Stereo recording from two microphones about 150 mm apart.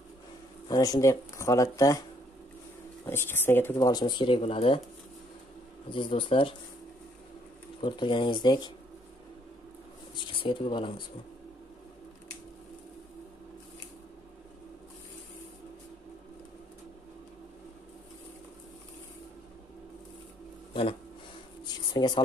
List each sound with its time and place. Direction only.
0.7 s speech: 25° left (ahead or behind)
3.1 s speech: 15° left (ahead or behind); by 4.7 s 40° left (ahead or behind)
5.9 s speech: 35° left (ahead or behind)
7.8 s speech: 30° left (ahead or behind)
10.4 s speech: 35° left (ahead or behind)
21.6 s a sound: 30° left (ahead or behind)